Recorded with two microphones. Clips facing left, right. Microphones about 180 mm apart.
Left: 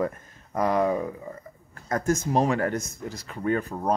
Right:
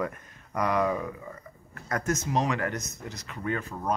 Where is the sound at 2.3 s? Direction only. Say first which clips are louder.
Left 5 dB; 40° left (ahead or behind).